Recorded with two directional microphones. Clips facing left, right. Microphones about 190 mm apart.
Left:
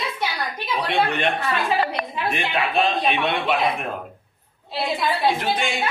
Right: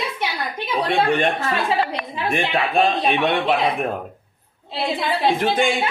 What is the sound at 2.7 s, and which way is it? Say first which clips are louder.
Speech: right 3 dB; 45° right (ahead or behind).